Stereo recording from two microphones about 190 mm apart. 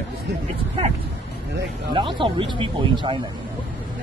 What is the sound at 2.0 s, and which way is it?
Speech, 25° right (ahead or behind).